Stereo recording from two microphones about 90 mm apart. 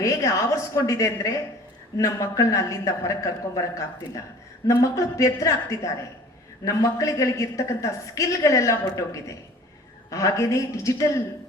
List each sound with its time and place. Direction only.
0.0 s a woman's voice: 35° left (ahead or behind)